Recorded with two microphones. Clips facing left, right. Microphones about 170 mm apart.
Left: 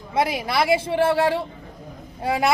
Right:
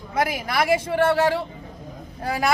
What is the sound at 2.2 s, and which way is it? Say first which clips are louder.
Speech: left 2 dB; 25° left (ahead or behind).